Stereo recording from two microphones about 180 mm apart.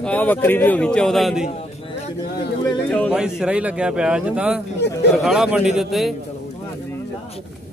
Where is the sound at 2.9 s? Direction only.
5° left (ahead or behind).